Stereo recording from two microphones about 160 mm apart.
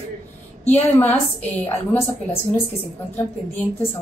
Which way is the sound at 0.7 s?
10° left (ahead or behind).